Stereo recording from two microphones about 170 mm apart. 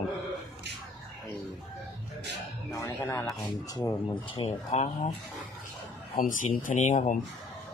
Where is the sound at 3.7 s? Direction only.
20° left (ahead or behind); by 5.1 s 40° left (ahead or behind).